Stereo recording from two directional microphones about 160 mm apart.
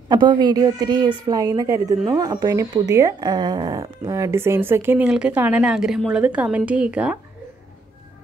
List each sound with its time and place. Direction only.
0.1 s a woman's voice: 25° right (ahead or behind); by 7.2 s 5° right (ahead or behind)